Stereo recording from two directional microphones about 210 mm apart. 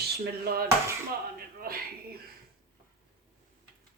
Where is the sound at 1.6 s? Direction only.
45° right (ahead or behind).